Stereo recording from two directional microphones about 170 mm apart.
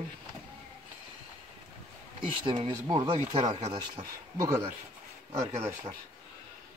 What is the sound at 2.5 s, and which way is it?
Speech, 30° right (ahead or behind).